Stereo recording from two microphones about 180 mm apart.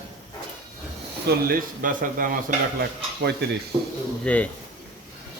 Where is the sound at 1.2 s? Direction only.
50° right (ahead or behind).